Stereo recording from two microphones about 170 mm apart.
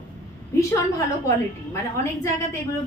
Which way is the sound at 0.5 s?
15° left (ahead or behind).